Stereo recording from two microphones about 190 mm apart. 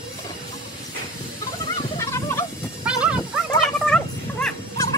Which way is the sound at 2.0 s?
15° left (ahead or behind).